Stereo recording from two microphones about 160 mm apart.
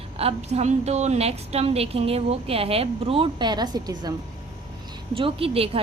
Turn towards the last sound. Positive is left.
turn(degrees=-35)  # may be behind; listen again after turning